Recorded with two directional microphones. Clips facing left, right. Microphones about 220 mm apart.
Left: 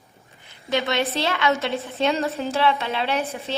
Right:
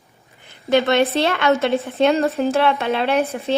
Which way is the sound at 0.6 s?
55° right (ahead or behind).